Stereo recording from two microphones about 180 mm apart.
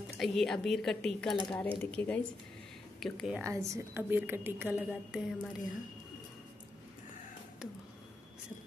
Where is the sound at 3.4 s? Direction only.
15° right (ahead or behind).